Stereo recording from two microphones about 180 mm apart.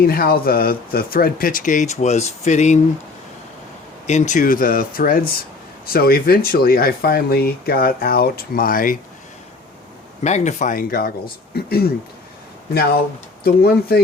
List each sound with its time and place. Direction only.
0.0 s speech: 55° left (ahead or behind)
4.0 s speech: 40° left (ahead or behind)
10.2 s speech: 40° left (ahead or behind); by 11.9 s 60° left (ahead or behind)
13.4 s speech: 60° left (ahead or behind)